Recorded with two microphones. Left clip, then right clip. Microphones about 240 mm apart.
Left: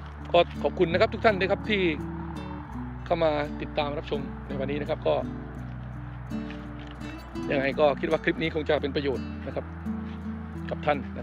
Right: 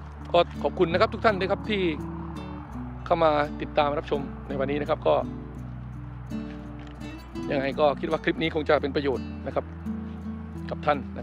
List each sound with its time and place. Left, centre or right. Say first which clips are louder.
0.3 s speech: even; centre
7.3 s speech: left 1 dB; centre
9.8 s music: even; centre